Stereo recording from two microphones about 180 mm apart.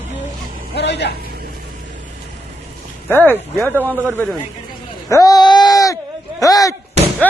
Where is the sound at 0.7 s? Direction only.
70° left (ahead or behind).